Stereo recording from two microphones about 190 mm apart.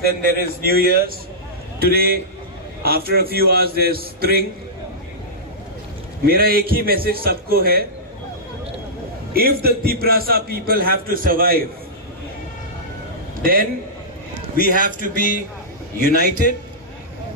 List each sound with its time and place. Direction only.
0.0 s a man's voice: 50° right (ahead or behind)
6.2 s a man's voice: 55° right (ahead or behind)
9.3 s a man's voice: 55° right (ahead or behind)
13.4 s a man's voice: 50° right (ahead or behind)
16.0 s a man's voice: 50° left (ahead or behind)